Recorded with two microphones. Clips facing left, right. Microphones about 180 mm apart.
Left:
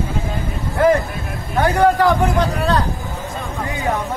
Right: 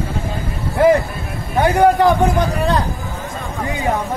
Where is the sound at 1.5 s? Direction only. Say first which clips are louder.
Right 2 dB; 20° right (ahead or behind).